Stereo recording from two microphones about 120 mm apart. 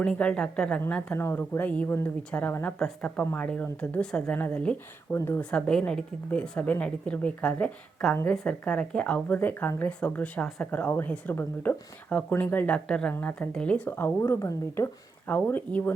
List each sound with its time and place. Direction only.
0.0 s speech: 10° left (ahead or behind)
5.4 s speech: 10° left (ahead or behind)